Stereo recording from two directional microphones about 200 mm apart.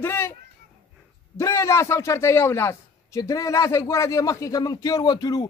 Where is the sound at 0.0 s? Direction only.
10° left (ahead or behind).